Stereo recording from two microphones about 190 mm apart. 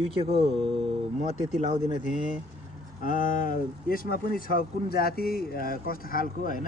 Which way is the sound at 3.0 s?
45° left (ahead or behind).